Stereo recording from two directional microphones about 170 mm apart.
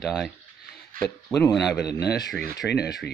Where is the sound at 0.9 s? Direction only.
55° right (ahead or behind).